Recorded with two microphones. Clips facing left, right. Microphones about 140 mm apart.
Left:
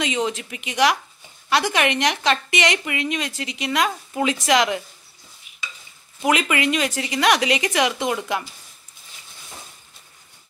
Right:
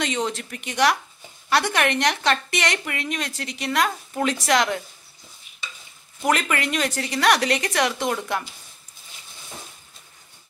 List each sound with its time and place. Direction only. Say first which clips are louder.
0.0 s a woman's voice: left 2 dB; centre (ahead or behind)
6.2 s a woman's voice: left 2 dB; 5° left (ahead or behind)